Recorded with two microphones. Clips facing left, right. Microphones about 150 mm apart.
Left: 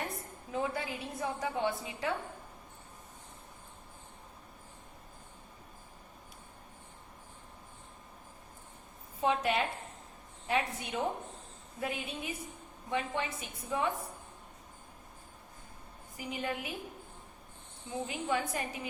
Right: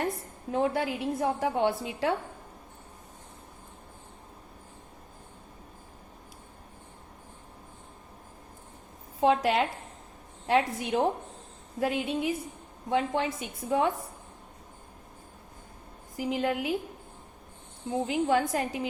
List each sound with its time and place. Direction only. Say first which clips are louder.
0.5 s a woman's voice: right 8 dB; 70° right (ahead or behind)
9.2 s a woman's voice: right 6 dB; 90° right
12.9 s a woman's voice: right 7 dB; 75° right (ahead or behind)
16.1 s a woman's voice: right 9 dB; 90° right
17.8 s a woman's voice: right 8 dB; 70° right (ahead or behind); by 18.9 s 90° right